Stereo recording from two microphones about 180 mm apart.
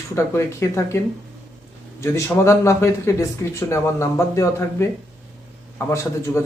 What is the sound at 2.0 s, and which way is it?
Speech, 15° left (ahead or behind).